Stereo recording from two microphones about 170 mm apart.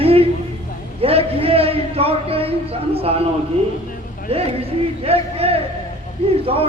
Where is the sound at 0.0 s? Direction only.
35° right (ahead or behind).